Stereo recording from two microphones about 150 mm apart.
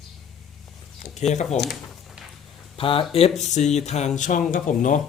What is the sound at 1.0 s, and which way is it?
Speech, 50° left (ahead or behind).